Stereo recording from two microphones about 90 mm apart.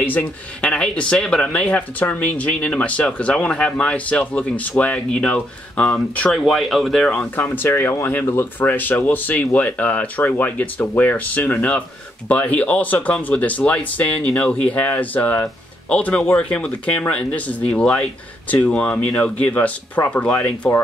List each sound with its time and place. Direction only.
0.0 s speech: 20° left (ahead or behind)
7.3 s speech: 20° left (ahead or behind)